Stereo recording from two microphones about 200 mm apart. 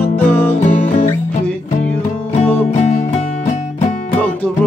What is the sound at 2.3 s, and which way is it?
Music, 35° left (ahead or behind).